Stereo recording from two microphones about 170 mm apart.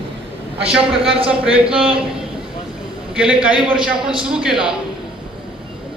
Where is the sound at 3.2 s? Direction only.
5° right (ahead or behind).